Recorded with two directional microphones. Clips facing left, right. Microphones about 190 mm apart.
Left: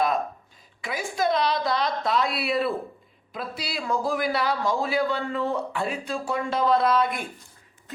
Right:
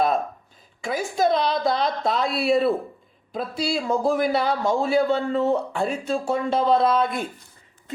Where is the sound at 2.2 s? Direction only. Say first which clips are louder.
Right 5 dB; 25° right (ahead or behind).